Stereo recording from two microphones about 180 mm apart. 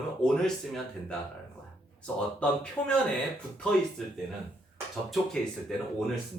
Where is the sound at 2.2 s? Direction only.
5° left (ahead or behind).